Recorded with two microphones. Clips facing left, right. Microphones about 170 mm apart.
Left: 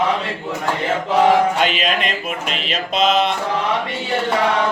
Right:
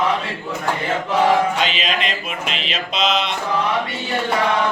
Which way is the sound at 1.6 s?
50° left (ahead or behind).